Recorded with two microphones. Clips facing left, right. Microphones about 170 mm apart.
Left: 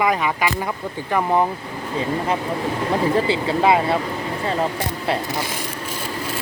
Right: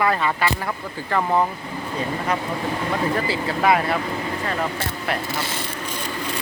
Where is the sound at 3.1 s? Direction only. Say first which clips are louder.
Left 4 dB; 25° left (ahead or behind); by 6.1 s 10° left (ahead or behind).